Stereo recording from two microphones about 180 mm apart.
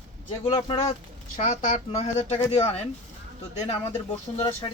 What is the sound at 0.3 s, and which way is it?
Speech, 30° left (ahead or behind).